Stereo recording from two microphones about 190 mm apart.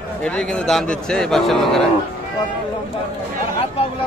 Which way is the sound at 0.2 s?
5° left (ahead or behind).